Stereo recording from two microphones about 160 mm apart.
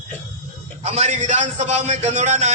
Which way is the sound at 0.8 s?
45° right (ahead or behind).